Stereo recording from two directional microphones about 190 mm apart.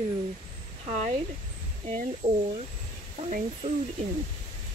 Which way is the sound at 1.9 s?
35° right (ahead or behind).